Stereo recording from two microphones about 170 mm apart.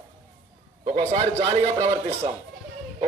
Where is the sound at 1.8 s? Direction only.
40° right (ahead or behind).